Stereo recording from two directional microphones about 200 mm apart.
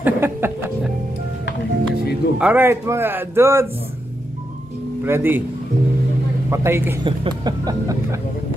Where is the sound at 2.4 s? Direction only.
10° right (ahead or behind).